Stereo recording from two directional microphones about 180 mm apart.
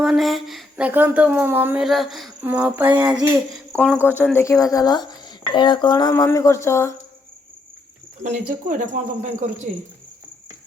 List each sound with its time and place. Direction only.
0.0 s speech: centre (ahead or behind)
2.4 s a sound: 10° right (ahead or behind)
3.7 s a woman's voice: 5° left (ahead or behind)
8.2 s speech: 45° right (ahead or behind)